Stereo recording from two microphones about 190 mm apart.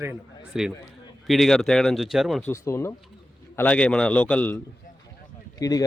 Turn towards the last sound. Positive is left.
turn(degrees=20)  # may be behind; listen again after turning